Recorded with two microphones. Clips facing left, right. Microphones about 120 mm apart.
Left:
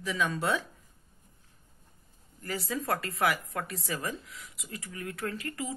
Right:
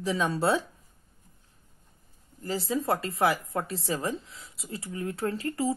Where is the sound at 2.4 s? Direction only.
25° right (ahead or behind).